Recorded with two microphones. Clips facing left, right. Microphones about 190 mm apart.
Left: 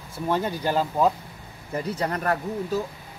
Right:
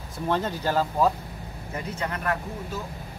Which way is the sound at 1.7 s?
35° left (ahead or behind).